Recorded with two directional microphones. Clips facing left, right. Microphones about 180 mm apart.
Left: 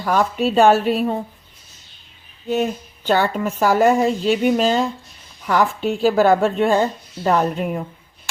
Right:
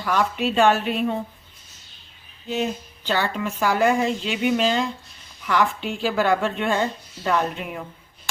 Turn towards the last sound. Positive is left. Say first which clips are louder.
# left 5 dB
turn(degrees=40)  # may be behind; listen again after turning